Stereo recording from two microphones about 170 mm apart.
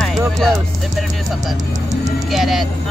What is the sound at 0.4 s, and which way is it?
Music, centre (ahead or behind).